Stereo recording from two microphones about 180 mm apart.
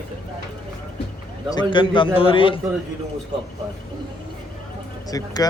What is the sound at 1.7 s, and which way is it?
Speech, 25° left (ahead or behind).